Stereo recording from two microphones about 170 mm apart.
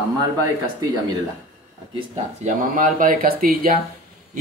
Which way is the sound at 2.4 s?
50° right (ahead or behind).